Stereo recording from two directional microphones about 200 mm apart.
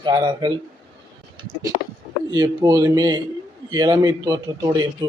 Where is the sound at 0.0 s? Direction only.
20° right (ahead or behind).